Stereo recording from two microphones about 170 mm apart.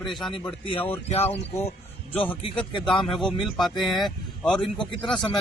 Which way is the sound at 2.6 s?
30° left (ahead or behind).